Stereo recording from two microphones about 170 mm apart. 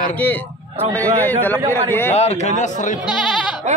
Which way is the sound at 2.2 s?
40° left (ahead or behind).